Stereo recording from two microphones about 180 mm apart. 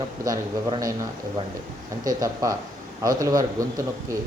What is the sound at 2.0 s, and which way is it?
A man's voice, 20° right (ahead or behind).